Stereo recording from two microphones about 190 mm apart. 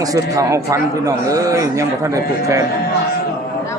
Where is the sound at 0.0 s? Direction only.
20° right (ahead or behind).